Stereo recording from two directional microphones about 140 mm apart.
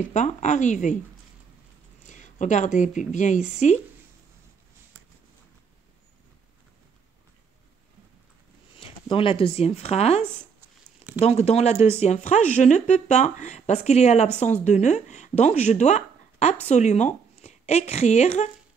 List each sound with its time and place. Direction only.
0.1 s speech: 60° left (ahead or behind)
2.0 s speech: 60° left (ahead or behind)
8.7 s speech: 40° left (ahead or behind)
11.2 s a woman's voice: 50° left (ahead or behind)